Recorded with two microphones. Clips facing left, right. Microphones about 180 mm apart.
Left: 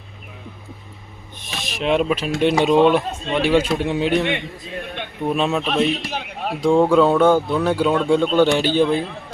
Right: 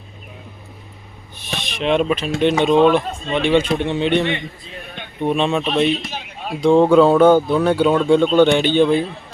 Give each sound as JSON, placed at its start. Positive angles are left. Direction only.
{"t": 1.5, "sound": "speech", "side_deg": 5}
{"t": 4.4, "sound": "a man's voice", "side_deg": 60}
{"t": 5.2, "sound": "speech", "side_deg": 5}
{"t": 5.9, "sound": "a man's voice", "side_deg": 60}
{"t": 6.6, "sound": "speech", "side_deg": 0}